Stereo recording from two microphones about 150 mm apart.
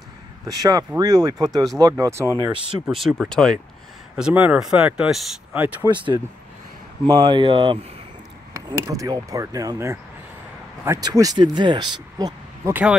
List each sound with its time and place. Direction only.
0.5 s speech: 25° right (ahead or behind)
2.9 s speech: centre (ahead or behind)
4.2 s speech: 10° right (ahead or behind)
7.1 s speech: 30° right (ahead or behind)
8.5 s speech: 20° right (ahead or behind)